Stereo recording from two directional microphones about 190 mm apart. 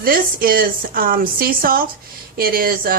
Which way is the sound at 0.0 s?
50° right (ahead or behind).